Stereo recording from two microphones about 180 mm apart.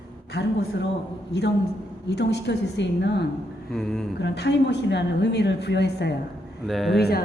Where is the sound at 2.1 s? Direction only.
70° left (ahead or behind).